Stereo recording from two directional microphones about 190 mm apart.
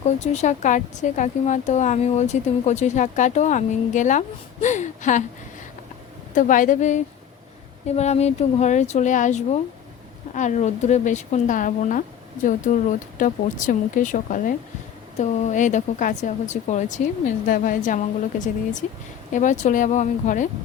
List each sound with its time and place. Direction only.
0.2 s speech: 40° left (ahead or behind)
6.3 s speech: 45° left (ahead or behind)